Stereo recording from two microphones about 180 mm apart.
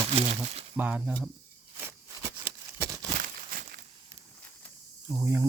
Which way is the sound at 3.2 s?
50° right (ahead or behind).